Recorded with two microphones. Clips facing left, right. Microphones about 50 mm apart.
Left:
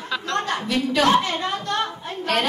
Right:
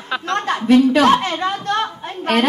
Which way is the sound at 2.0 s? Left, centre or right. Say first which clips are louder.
Right 5 dB; right.